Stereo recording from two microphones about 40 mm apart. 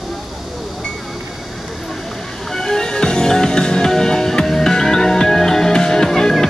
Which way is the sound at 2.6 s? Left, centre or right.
Centre.